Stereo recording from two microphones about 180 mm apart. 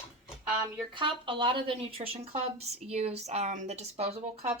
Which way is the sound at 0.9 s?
30° right (ahead or behind).